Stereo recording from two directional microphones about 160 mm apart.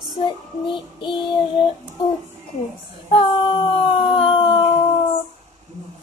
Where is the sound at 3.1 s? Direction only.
35° left (ahead or behind).